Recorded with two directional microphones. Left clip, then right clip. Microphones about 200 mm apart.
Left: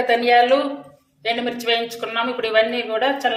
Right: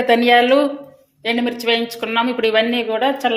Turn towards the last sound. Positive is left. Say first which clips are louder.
# right 2 dB
turn(degrees=-35)  # may be behind; listen again after turning